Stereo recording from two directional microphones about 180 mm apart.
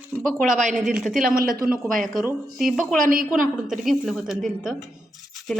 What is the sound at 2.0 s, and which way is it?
Speech, centre (ahead or behind).